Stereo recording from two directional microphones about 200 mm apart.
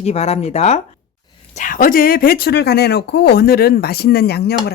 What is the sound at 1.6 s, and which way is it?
Speech, 40° left (ahead or behind).